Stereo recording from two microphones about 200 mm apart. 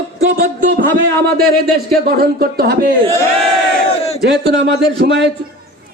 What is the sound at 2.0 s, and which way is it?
Speech, 50° right (ahead or behind).